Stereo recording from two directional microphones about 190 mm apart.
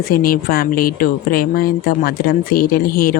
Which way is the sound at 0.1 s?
50° left (ahead or behind).